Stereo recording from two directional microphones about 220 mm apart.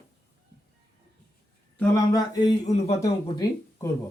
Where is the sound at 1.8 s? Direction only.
15° left (ahead or behind).